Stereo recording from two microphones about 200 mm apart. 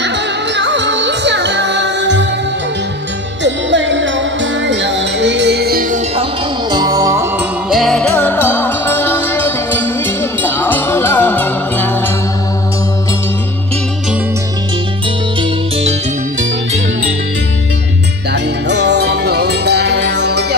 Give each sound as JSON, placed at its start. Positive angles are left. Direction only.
{"t": 0.6, "sound": "music", "side_deg": -60}
{"t": 3.4, "sound": "music", "side_deg": -65}
{"t": 6.7, "sound": "music", "side_deg": -20}
{"t": 7.7, "sound": "music", "side_deg": 0}
{"t": 18.3, "sound": "music", "side_deg": -60}